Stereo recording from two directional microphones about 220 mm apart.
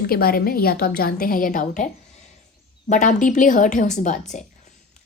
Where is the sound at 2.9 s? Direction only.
35° left (ahead or behind).